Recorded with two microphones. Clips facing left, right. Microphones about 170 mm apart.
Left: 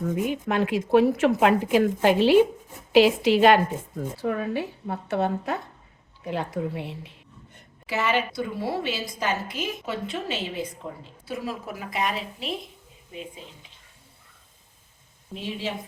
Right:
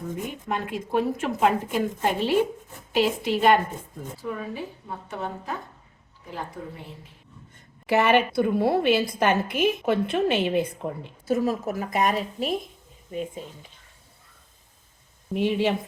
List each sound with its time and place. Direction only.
0.3 s a woman's voice: 85° left
4.2 s a woman's voice: 70° left (ahead or behind)
7.9 s a woman's voice: 60° right (ahead or behind)
15.3 s a woman's voice: 60° right (ahead or behind)